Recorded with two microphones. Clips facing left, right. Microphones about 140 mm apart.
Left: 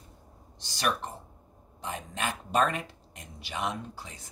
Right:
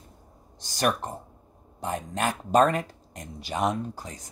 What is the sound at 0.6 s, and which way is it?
Speech, 45° right (ahead or behind).